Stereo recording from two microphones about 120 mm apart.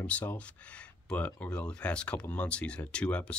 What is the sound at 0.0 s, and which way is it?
Speech, 15° left (ahead or behind).